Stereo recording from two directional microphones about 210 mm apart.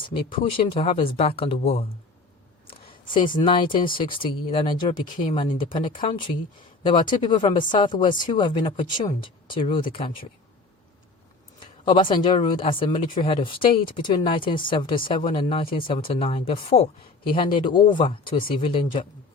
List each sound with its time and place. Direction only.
0.1 s speech: 25° left (ahead or behind)
11.6 s speech: 20° left (ahead or behind)